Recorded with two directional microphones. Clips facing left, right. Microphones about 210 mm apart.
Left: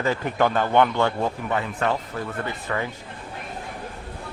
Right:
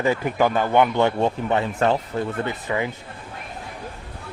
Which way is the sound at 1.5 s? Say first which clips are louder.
Right 4 dB; 30° right (ahead or behind).